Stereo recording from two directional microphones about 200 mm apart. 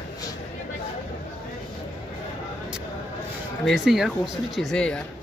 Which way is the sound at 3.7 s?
Centre (ahead or behind).